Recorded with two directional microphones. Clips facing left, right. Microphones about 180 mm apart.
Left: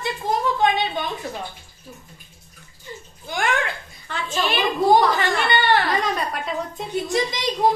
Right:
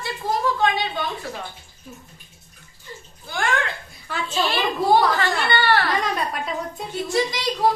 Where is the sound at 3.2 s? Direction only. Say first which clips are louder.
Left 1 dB; 15° left (ahead or behind).